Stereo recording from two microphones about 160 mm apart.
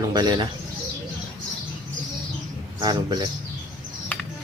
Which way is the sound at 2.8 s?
25° right (ahead or behind).